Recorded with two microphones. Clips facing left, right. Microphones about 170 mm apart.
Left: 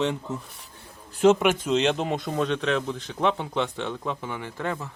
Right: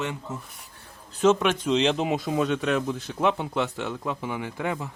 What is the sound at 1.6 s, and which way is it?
Speech, centre (ahead or behind).